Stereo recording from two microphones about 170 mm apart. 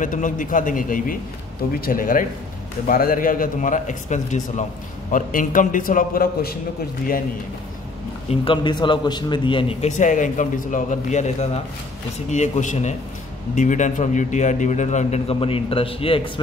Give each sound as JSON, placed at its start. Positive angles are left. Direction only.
{"t": 0.0, "sound": "a man's voice", "side_deg": 50}
{"t": 8.3, "sound": "a man's voice", "side_deg": 30}